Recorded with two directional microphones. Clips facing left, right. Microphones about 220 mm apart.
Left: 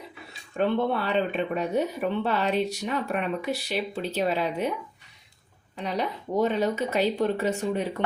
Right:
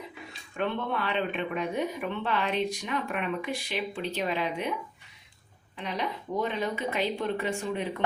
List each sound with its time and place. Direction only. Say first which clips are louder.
0.5 s a woman's voice: left 6 dB; 40° left (ahead or behind)
5.7 s a woman's voice: left 4 dB; 40° left (ahead or behind)